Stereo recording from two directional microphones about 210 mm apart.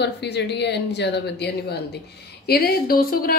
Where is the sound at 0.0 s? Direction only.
55° left (ahead or behind).